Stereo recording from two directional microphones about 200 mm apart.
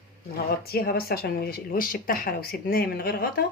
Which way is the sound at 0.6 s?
50° left (ahead or behind).